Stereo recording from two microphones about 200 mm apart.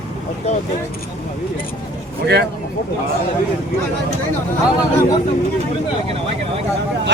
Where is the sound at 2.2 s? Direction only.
55° right (ahead or behind).